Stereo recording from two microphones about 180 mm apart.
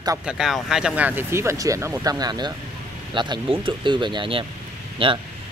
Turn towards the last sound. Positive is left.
turn(degrees=-30)  # may be behind; listen again after turning